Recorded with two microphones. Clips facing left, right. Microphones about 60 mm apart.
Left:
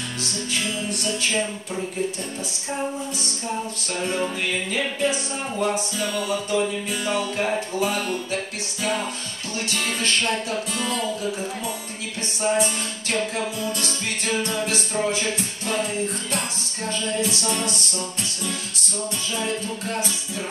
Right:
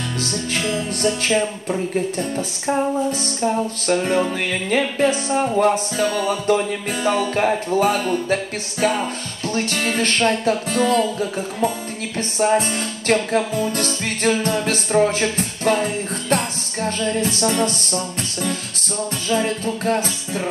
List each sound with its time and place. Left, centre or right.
0.2 s music: right
3.4 s music: right
9.6 s music: right
19.3 s music: right